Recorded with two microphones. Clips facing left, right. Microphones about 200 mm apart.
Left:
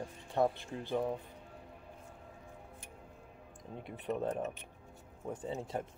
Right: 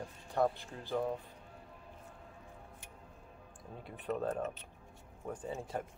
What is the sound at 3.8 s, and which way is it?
Speech, 20° left (ahead or behind).